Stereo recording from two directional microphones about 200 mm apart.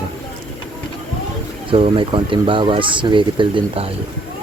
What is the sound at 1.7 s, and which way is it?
Speech, 25° right (ahead or behind).